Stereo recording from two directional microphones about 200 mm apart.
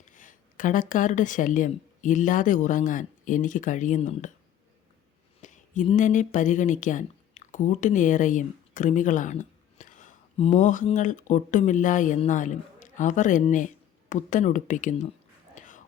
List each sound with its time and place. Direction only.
0.0 s speech: 40° left (ahead or behind)
5.4 s speech: 40° left (ahead or behind)
15.5 s whispering: 40° left (ahead or behind)